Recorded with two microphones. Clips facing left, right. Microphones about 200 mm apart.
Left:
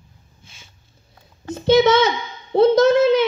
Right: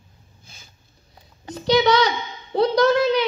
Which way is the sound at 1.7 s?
25° left (ahead or behind).